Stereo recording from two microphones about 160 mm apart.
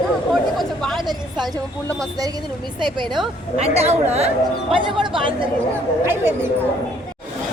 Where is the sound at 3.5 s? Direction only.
40° right (ahead or behind).